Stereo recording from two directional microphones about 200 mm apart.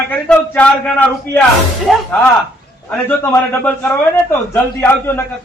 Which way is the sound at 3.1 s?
10° left (ahead or behind).